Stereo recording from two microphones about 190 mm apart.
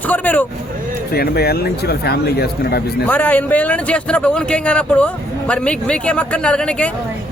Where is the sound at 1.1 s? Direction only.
55° left (ahead or behind).